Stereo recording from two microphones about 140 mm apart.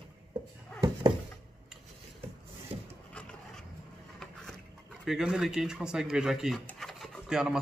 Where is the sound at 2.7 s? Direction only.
50° right (ahead or behind).